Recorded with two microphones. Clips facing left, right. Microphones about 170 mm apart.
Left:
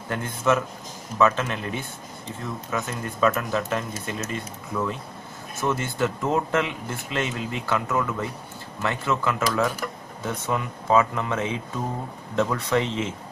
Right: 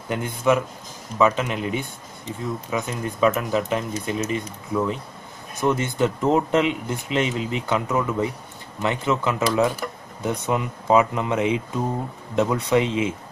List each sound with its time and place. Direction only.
0.1 s speech: 15° right (ahead or behind)